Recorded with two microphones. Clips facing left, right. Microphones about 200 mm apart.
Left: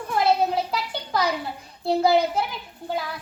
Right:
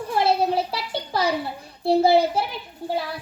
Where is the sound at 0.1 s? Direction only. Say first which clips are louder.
Even; 30° right (ahead or behind).